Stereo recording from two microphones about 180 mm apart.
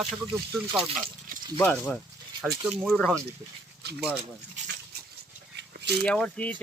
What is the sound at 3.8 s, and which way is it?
Dog, 65° right (ahead or behind).